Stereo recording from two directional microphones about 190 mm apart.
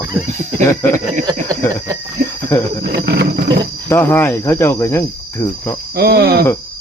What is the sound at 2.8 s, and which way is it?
Speech, 55° right (ahead or behind).